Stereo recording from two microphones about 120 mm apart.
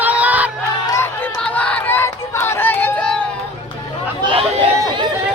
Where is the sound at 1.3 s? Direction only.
10° left (ahead or behind).